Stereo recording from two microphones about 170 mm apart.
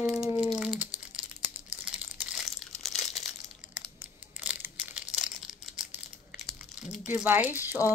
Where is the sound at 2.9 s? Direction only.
40° left (ahead or behind).